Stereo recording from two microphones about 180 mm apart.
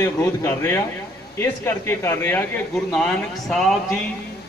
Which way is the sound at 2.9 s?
Centre (ahead or behind).